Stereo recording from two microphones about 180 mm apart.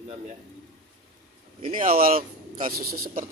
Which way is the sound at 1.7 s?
50° right (ahead or behind).